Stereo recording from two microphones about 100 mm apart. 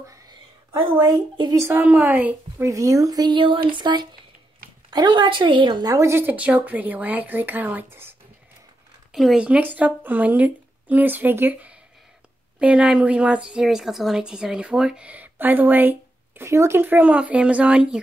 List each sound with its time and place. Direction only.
0.1 s a sound: 45° right (ahead or behind)
1.5 s a woman's voice: 25° right (ahead or behind)
2.6 s speech: 35° right (ahead or behind)
3.3 s speech: 55° right (ahead or behind)
5.9 s a woman's voice: 25° right (ahead or behind)
9.1 s a woman's voice: 5° right (ahead or behind); by 11.7 s 20° right (ahead or behind)
12.5 s a woman's voice: 10° right (ahead or behind)